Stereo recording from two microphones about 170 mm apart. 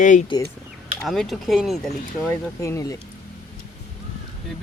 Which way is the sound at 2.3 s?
15° left (ahead or behind).